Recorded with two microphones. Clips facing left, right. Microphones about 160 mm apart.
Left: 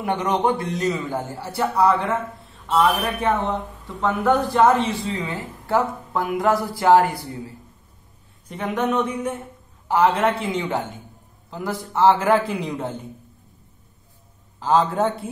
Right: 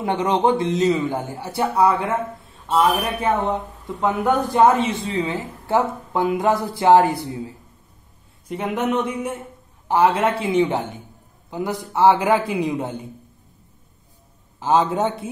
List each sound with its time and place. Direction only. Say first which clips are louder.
0.0 s a man's voice: right 2 dB; 25° right (ahead or behind)
5.0 s speech: right 3 dB; 25° right (ahead or behind)
8.5 s a man's voice: even; 10° right (ahead or behind)
14.6 s speech: even; 20° right (ahead or behind)